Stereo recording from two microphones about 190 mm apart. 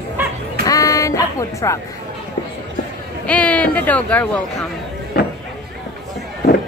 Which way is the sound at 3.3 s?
5° left (ahead or behind).